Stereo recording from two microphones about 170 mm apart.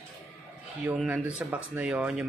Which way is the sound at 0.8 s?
10° right (ahead or behind).